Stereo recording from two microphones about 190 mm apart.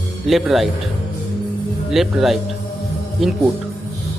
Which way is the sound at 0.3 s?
Centre (ahead or behind).